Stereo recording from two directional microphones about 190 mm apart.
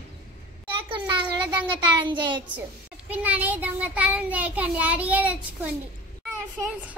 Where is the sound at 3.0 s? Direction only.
10° right (ahead or behind).